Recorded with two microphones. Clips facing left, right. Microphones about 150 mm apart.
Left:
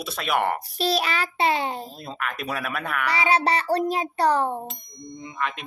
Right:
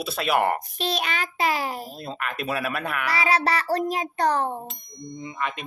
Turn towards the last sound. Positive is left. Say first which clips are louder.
# left 2 dB
turn(degrees=35)  # may be behind; listen again after turning